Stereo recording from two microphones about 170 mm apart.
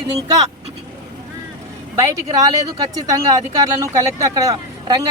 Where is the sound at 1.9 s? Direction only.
20° right (ahead or behind).